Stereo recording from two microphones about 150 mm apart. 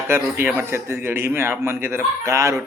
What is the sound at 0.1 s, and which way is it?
A man's voice, 15° right (ahead or behind).